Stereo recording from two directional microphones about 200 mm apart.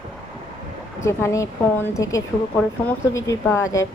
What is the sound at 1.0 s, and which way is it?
Speech, 15° left (ahead or behind).